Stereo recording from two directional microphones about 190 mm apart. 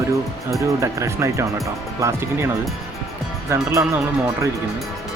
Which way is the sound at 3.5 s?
15° right (ahead or behind).